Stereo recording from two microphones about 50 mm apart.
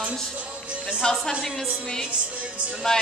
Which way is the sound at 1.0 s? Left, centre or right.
Centre.